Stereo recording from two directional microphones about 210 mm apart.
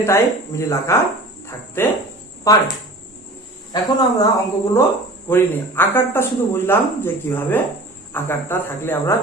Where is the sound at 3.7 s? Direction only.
20° left (ahead or behind).